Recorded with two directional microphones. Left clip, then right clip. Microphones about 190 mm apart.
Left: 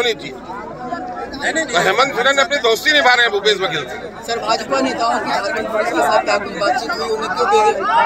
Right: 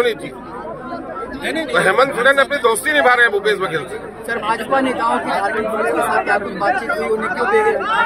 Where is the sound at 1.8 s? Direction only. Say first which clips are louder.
Right 3 dB; 10° right (ahead or behind).